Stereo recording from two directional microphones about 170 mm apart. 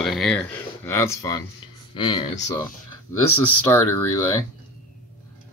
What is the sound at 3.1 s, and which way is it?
Speech, 15° left (ahead or behind).